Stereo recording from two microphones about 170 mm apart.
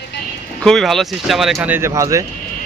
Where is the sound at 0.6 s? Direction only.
Centre (ahead or behind).